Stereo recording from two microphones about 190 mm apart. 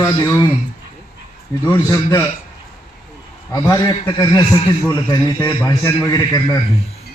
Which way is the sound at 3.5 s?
15° left (ahead or behind).